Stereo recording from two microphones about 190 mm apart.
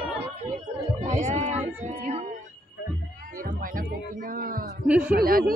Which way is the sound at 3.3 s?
45° right (ahead or behind).